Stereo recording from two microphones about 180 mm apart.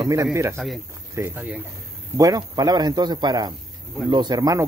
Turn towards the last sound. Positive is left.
turn(degrees=-20)  # may be behind; listen again after turning